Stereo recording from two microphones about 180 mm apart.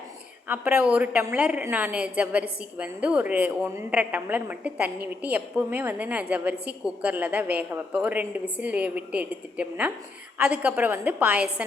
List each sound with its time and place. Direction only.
0.4 s a woman's voice: 10° right (ahead or behind)